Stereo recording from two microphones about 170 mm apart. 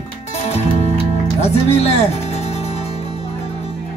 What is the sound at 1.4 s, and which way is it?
Speech, 40° left (ahead or behind).